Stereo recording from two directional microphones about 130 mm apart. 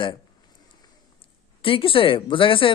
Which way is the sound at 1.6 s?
45° left (ahead or behind).